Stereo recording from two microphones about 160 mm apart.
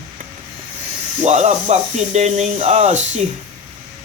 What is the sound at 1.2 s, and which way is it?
Speech, 45° right (ahead or behind).